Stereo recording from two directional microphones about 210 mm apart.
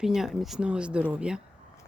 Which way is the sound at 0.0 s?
Centre (ahead or behind).